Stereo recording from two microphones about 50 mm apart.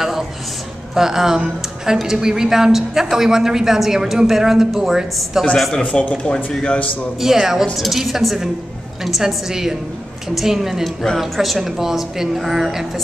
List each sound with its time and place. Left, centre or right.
0.0 s a sound: centre
0.9 s a woman's voice: centre
5.8 s speech: left
7.2 s a woman's voice: centre